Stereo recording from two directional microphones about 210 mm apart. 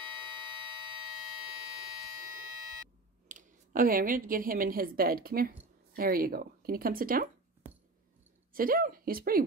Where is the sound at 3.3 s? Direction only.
40° right (ahead or behind).